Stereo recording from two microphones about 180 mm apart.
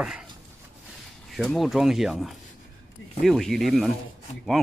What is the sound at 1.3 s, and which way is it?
Speech, centre (ahead or behind).